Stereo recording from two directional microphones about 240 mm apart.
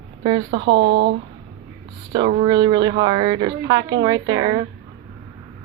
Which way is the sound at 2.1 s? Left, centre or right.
Right.